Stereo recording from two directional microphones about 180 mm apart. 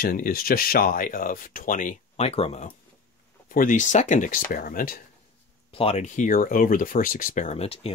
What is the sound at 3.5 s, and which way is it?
Speech, 45° left (ahead or behind).